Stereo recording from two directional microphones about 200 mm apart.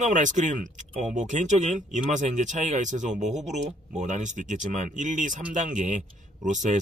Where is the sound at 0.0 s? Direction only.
40° right (ahead or behind).